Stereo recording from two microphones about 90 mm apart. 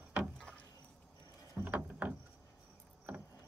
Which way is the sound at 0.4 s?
10° left (ahead or behind).